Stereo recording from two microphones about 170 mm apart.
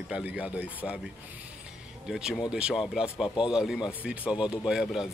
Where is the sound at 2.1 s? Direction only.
5° right (ahead or behind).